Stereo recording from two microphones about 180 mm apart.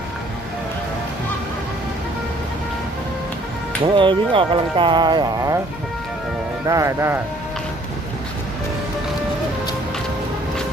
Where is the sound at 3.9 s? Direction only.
30° right (ahead or behind).